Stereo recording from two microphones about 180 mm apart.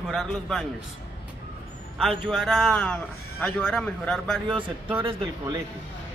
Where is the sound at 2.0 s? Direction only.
Centre (ahead or behind).